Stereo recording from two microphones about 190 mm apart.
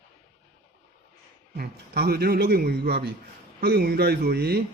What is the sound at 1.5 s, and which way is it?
A man's voice, 55° right (ahead or behind).